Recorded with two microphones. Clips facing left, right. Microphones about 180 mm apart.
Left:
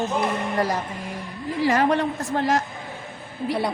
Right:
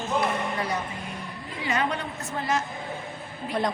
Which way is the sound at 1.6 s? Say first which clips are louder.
Left 8 dB; 70° left (ahead or behind).